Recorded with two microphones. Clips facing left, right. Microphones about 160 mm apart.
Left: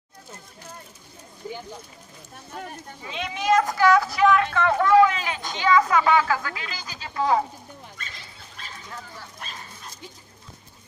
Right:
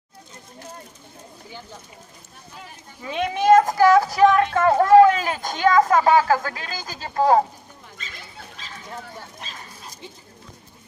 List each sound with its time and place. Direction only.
2.5 s speech: 55° left (ahead or behind)
3.1 s speech: 50° right (ahead or behind)